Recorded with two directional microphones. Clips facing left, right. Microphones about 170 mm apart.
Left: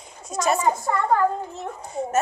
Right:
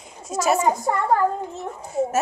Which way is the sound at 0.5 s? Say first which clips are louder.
Right 2 dB; 15° right (ahead or behind).